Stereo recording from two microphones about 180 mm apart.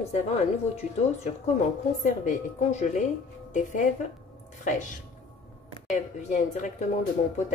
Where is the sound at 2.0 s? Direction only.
40° left (ahead or behind).